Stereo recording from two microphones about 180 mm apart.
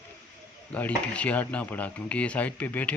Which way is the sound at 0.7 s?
10° left (ahead or behind).